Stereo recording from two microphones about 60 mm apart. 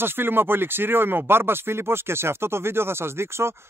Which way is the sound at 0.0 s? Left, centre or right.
Right.